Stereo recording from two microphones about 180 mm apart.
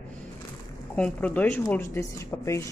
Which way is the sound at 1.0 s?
10° left (ahead or behind).